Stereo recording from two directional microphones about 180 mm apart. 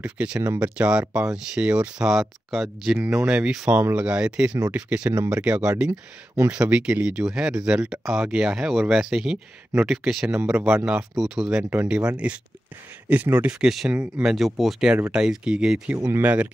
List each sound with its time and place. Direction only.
0.0 s speech: 5° right (ahead or behind)